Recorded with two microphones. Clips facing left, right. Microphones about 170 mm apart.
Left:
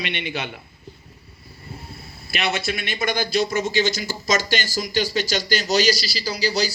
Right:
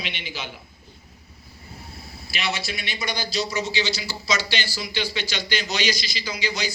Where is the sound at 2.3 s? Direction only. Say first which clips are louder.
Left 5 dB; 50° left (ahead or behind).